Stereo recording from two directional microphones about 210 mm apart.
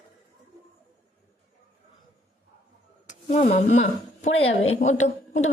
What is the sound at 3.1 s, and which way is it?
A woman's voice, 35° left (ahead or behind).